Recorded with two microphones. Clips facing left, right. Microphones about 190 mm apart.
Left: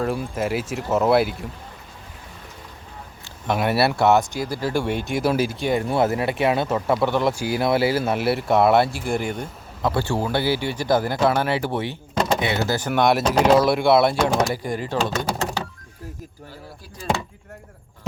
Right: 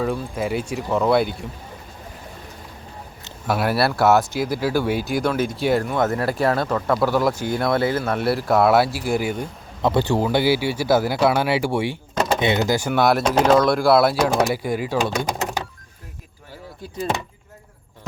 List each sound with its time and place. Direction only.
0.3 s speech: 5° left (ahead or behind)
3.4 s speech: 5° right (ahead or behind)
9.8 s speech: 20° right (ahead or behind)
12.9 s speech: centre (ahead or behind)